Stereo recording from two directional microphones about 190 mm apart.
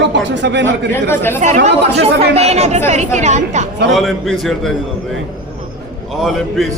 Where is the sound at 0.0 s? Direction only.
65° right (ahead or behind).